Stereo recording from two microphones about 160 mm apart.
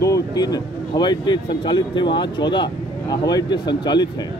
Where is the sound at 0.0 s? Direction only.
20° left (ahead or behind).